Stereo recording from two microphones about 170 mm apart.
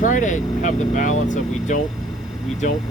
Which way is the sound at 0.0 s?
50° left (ahead or behind).